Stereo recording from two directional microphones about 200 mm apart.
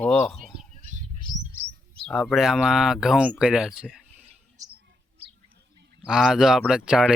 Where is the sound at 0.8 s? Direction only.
35° right (ahead or behind).